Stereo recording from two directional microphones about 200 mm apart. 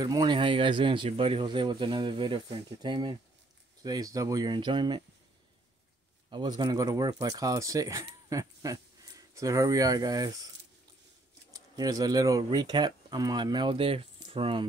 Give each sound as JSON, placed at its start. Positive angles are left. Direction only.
{"t": 0.0, "sound": "speech", "side_deg": -20}
{"t": 6.3, "sound": "speech", "side_deg": -20}
{"t": 11.5, "sound": "speech", "side_deg": -20}